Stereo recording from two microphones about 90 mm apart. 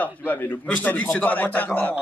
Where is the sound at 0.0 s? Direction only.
20° left (ahead or behind).